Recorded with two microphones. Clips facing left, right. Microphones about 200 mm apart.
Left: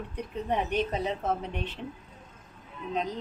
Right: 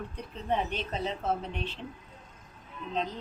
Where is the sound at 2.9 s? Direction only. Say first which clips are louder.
Left 2 dB; 15° left (ahead or behind).